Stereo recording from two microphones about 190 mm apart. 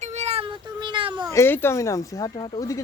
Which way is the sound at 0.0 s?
35° right (ahead or behind).